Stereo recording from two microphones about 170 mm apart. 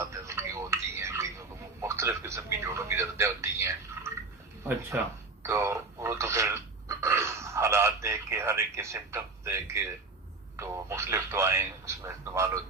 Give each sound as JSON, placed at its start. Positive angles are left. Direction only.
{"t": 0.1, "sound": "tick-tock", "side_deg": -15}
{"t": 1.8, "sound": "television", "side_deg": -15}
{"t": 4.9, "sound": "speech", "side_deg": -10}
{"t": 5.4, "sound": "radio", "side_deg": -15}
{"t": 10.6, "sound": "a man's voice", "side_deg": -15}